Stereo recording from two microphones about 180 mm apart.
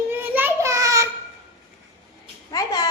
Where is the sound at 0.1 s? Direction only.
10° right (ahead or behind).